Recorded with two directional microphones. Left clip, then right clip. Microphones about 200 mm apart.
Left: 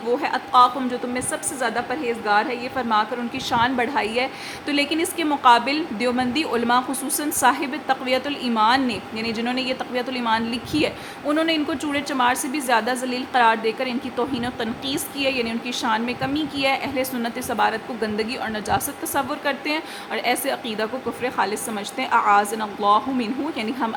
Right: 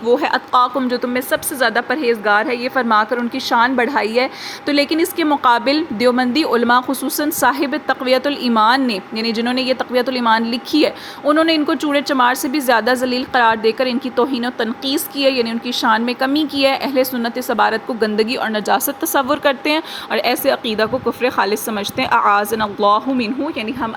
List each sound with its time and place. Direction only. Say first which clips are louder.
0.0 s a woman's voice: right 7 dB; 30° right (ahead or behind)
23.6 s a woman's voice: right 3 dB; 10° right (ahead or behind)